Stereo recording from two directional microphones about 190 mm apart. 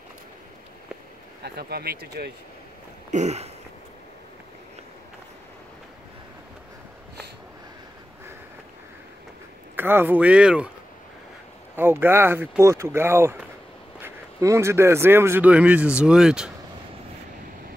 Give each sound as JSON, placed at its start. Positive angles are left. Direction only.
{"t": 1.4, "sound": "speech", "side_deg": -55}
{"t": 3.1, "sound": "a sound", "side_deg": -35}
{"t": 9.8, "sound": "speech", "side_deg": -10}
{"t": 11.7, "sound": "speech", "side_deg": -10}